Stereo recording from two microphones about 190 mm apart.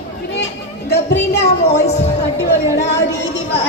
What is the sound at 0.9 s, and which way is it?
Speech, 65° left (ahead or behind).